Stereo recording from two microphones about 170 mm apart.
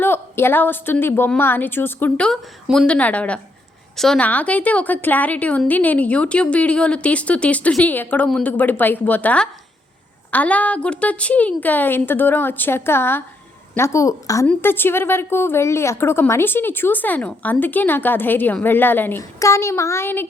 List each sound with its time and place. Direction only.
0.0 s a woman's voice: 15° left (ahead or behind)